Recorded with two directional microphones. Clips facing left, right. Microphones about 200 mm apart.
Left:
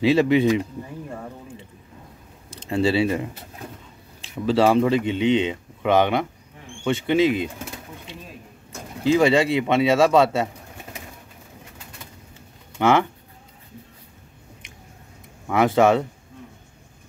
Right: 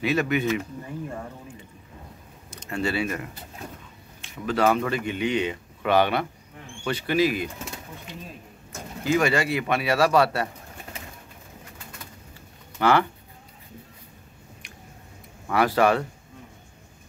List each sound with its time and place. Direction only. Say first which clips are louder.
0.0 s speech: left 7 dB; 25° left (ahead or behind)
2.5 s speech: left 7 dB; 30° left (ahead or behind)
9.0 s speech: left 5 dB; 25° left (ahead or behind)
12.7 s speech: left 2 dB; 20° left (ahead or behind)
15.4 s speech: left 3 dB; 20° left (ahead or behind)